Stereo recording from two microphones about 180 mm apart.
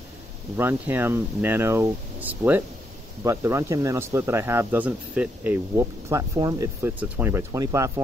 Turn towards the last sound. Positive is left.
turn(degrees=-15)  # may be behind; listen again after turning